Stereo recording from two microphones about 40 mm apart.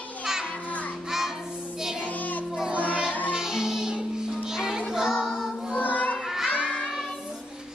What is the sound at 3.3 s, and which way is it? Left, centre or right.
Music, centre.